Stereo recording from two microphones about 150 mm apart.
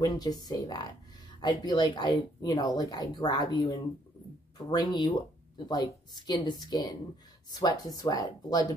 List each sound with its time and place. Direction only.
0.0 s speech: 25° left (ahead or behind)